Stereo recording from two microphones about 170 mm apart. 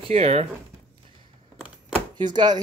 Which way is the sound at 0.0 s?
35° right (ahead or behind).